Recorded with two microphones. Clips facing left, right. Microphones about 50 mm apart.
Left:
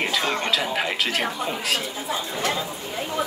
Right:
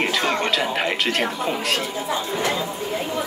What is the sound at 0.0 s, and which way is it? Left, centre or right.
Speech, centre.